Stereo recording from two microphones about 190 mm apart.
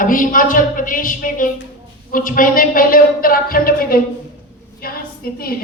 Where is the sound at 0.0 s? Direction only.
45° left (ahead or behind).